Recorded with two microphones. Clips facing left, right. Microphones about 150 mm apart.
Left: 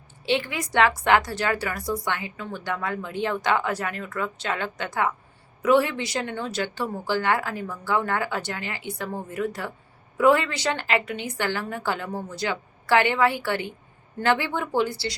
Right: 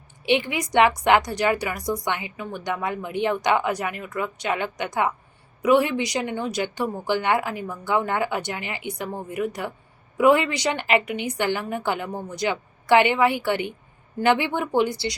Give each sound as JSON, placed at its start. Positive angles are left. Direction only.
{"t": 0.2, "sound": "a woman's voice", "side_deg": -15}